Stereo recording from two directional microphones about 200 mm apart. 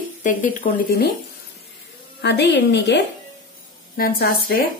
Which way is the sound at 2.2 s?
60° left (ahead or behind).